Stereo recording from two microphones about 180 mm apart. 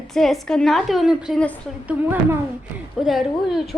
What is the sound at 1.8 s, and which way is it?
A woman's voice, 10° right (ahead or behind).